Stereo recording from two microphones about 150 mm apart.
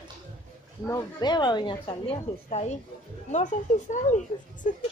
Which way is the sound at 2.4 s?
45° left (ahead or behind).